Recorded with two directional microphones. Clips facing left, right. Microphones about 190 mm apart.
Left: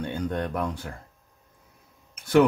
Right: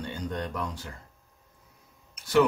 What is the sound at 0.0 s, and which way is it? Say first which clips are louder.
Speech: left 5 dB; 55° left (ahead or behind).